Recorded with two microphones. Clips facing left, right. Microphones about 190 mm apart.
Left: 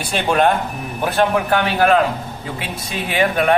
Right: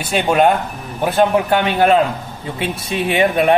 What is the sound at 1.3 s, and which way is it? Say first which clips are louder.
Speech: right 2 dB; 25° right (ahead or behind).